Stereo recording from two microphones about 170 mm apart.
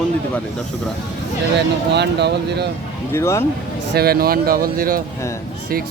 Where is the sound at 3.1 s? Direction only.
15° left (ahead or behind).